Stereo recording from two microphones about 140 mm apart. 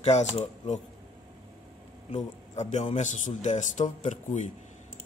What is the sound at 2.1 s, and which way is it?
A man's voice, 55° left (ahead or behind).